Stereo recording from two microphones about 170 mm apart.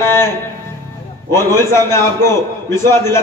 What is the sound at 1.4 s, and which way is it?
Speech, 15° left (ahead or behind).